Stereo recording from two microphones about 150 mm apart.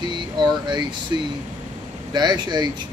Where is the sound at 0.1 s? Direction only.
30° right (ahead or behind).